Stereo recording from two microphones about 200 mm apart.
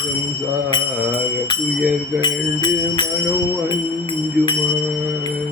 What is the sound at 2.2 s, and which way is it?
Music, 20° left (ahead or behind).